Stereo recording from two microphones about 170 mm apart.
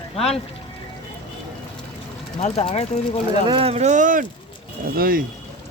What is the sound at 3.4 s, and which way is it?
Speech, 35° right (ahead or behind).